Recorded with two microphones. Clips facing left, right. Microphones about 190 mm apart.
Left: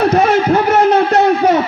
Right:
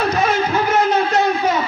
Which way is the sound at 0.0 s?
60° left (ahead or behind).